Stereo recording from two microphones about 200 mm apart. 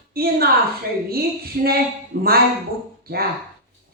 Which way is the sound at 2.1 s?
50° right (ahead or behind).